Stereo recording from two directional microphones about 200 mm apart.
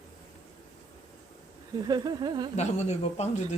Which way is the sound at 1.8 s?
20° right (ahead or behind).